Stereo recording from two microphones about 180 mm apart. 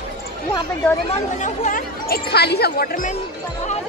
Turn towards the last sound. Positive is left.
turn(degrees=55)  # may be behind; listen again after turning